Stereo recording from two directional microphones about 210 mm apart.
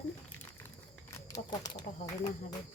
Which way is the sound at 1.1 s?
15° left (ahead or behind).